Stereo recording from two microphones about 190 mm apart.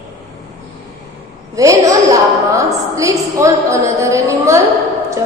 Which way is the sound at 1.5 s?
15° right (ahead or behind).